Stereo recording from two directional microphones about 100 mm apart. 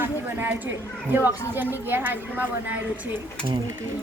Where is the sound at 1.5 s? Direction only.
20° right (ahead or behind).